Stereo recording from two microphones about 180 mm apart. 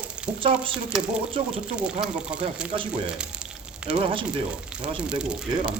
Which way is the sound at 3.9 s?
30° right (ahead or behind).